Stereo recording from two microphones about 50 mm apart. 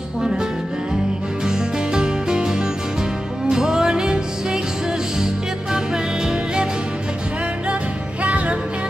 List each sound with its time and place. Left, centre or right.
1.4 s music: centre
6.2 s music: centre
8.2 s music: right